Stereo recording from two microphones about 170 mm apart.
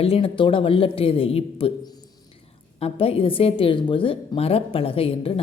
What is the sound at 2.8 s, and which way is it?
Speech, 35° left (ahead or behind).